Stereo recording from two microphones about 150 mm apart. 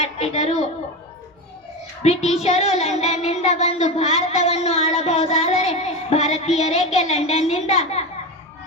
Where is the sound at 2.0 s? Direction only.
45° left (ahead or behind).